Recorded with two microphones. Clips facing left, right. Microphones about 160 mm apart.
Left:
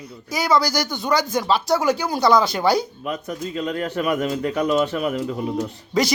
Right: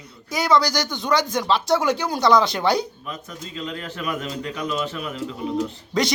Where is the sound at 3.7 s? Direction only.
50° left (ahead or behind).